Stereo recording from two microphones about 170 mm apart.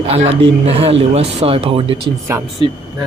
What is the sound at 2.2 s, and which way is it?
Speech, 15° right (ahead or behind).